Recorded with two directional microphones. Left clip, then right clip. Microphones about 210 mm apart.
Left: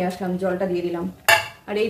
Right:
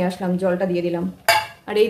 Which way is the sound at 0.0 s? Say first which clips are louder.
Right 2 dB; 40° right (ahead or behind).